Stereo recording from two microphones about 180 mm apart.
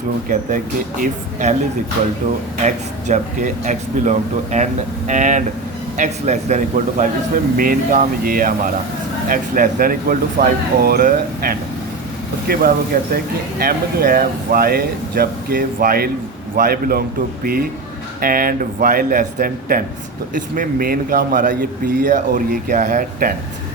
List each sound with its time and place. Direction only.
0.3 s a man's voice: 50° right (ahead or behind)
2.6 s a man's voice: 40° right (ahead or behind)
18.2 s a man's voice: 55° right (ahead or behind)